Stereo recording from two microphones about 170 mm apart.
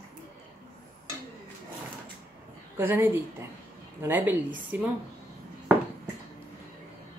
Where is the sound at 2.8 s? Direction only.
10° right (ahead or behind).